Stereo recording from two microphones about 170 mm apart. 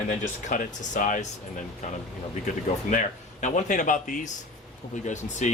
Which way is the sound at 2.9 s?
45° left (ahead or behind).